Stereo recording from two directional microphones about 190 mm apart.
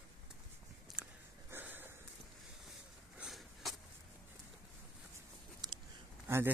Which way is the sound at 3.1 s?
Centre (ahead or behind).